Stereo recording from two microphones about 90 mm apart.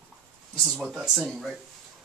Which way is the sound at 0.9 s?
10° right (ahead or behind).